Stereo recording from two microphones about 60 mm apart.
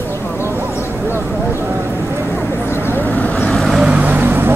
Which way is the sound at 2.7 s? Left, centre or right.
Left.